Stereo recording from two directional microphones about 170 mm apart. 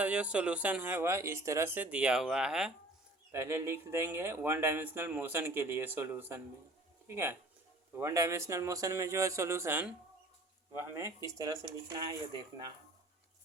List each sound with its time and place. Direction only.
0.0 s speech: 5° right (ahead or behind)
3.3 s speech: 15° right (ahead or behind)